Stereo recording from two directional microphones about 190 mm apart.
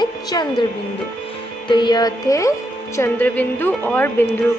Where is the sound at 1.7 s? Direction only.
25° left (ahead or behind).